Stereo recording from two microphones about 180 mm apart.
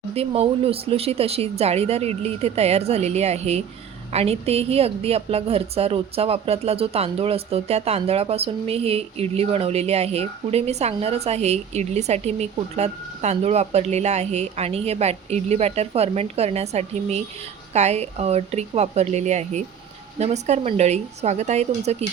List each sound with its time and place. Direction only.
0.1 s a woman's voice: 35° right (ahead or behind)